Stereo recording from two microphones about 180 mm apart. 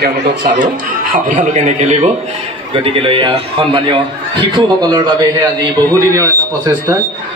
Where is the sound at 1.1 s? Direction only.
45° right (ahead or behind); by 6.3 s 20° right (ahead or behind).